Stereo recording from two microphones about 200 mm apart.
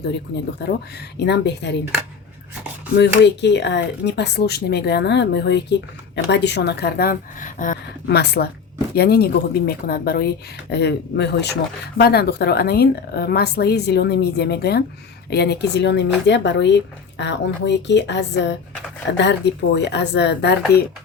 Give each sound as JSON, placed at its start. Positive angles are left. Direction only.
{"t": 0.6, "sound": "speech", "side_deg": 55}
{"t": 3.0, "sound": "speech", "side_deg": 60}